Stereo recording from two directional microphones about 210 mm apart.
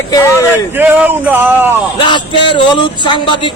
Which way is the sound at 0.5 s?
10° right (ahead or behind).